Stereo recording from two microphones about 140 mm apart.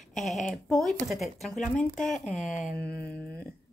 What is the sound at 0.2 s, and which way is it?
Speech, centre (ahead or behind).